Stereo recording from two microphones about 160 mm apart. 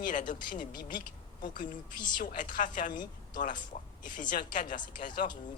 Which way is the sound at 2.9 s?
25° left (ahead or behind).